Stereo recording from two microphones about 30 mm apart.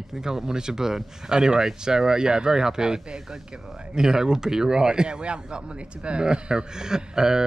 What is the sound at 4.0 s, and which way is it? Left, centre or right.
Speech, right.